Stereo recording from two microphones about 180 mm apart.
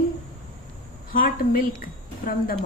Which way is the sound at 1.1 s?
50° left (ahead or behind).